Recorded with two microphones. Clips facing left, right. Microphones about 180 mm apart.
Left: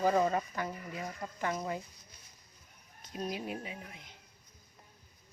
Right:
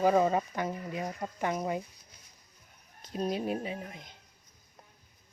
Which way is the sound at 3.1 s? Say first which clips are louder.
Right 6 dB; 30° right (ahead or behind).